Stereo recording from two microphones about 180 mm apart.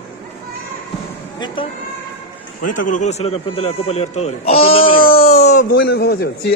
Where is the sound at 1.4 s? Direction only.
30° left (ahead or behind).